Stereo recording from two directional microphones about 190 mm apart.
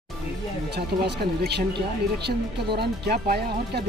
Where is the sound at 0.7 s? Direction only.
60° right (ahead or behind).